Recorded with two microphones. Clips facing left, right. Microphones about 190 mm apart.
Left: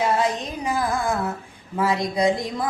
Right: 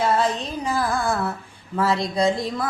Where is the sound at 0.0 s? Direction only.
10° left (ahead or behind).